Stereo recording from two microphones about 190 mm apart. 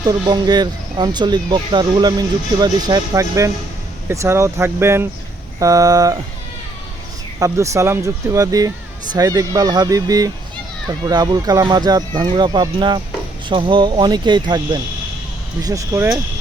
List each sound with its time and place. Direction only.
0.0 s speech: 20° right (ahead or behind)
7.3 s speech: 15° right (ahead or behind)